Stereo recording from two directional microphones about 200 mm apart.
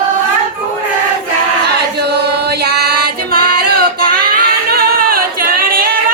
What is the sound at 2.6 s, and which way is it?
Female singing, 55° right (ahead or behind).